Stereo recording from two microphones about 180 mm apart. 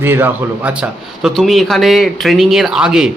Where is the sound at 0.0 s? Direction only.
10° right (ahead or behind).